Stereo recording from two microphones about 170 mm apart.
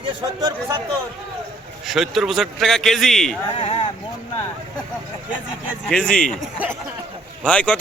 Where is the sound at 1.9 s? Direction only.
Centre (ahead or behind).